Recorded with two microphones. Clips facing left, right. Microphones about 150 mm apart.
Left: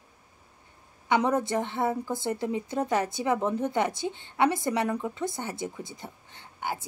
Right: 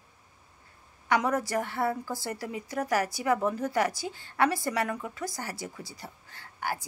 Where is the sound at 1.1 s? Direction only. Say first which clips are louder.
Left 2 dB; 25° left (ahead or behind).